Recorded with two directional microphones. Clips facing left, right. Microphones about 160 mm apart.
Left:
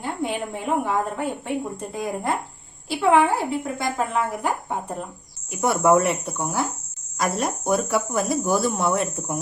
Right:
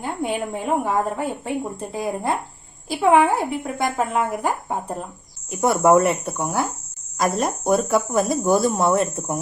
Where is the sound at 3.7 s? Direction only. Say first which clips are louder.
Right 5 dB; 45° right (ahead or behind).